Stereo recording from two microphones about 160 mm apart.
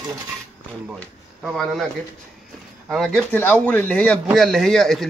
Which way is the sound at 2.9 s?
Centre (ahead or behind).